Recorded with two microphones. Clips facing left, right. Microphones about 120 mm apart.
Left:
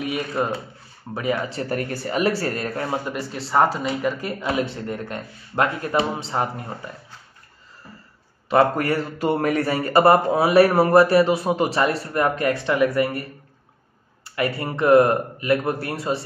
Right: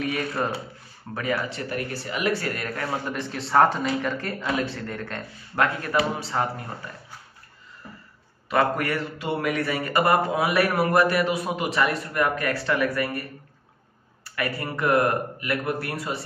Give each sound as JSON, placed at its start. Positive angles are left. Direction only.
{"t": 0.4, "sound": "speech", "side_deg": 15}
{"t": 1.5, "sound": "a man's voice", "side_deg": 40}
{"t": 3.1, "sound": "speech", "side_deg": 5}
{"t": 8.5, "sound": "a man's voice", "side_deg": 30}
{"t": 14.2, "sound": "speech", "side_deg": 25}